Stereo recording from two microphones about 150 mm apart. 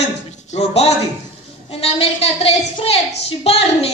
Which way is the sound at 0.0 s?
45° left (ahead or behind).